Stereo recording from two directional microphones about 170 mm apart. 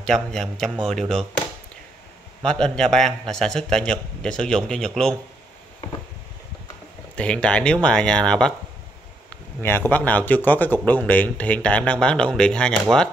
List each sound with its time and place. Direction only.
0.0 s a man's voice: 5° left (ahead or behind)
2.4 s a man's voice: 5° left (ahead or behind)
7.2 s a man's voice: 5° left (ahead or behind)
9.6 s speech: 10° left (ahead or behind)